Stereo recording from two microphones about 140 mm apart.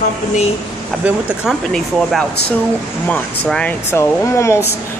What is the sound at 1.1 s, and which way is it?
Speech, 10° right (ahead or behind).